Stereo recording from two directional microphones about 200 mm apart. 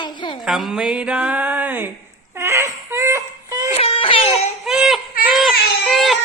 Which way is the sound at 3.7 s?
30° left (ahead or behind).